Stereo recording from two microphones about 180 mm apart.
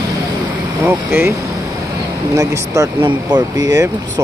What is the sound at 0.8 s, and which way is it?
Speech, 10° right (ahead or behind).